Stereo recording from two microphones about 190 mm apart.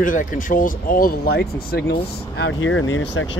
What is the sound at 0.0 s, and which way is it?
Speech, 45° left (ahead or behind).